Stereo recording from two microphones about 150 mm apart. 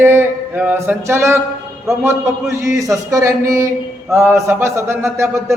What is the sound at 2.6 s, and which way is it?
Speech, 20° right (ahead or behind).